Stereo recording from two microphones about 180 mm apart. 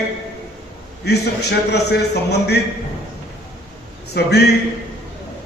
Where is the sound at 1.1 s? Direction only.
65° left (ahead or behind).